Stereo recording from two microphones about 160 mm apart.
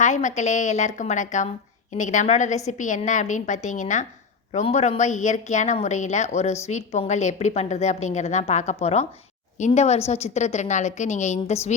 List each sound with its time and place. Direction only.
0.0 s a woman's voice: 50° left (ahead or behind)